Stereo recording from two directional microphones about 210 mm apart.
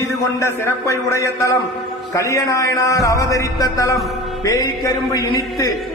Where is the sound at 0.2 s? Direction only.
15° left (ahead or behind).